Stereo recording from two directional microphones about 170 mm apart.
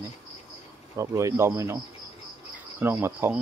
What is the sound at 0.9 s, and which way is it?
Speech, 20° right (ahead or behind).